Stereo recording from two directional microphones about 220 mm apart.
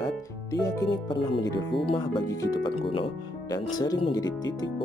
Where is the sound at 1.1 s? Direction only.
20° left (ahead or behind).